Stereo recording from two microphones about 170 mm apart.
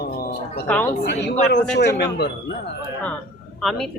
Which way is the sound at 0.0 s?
70° left (ahead or behind).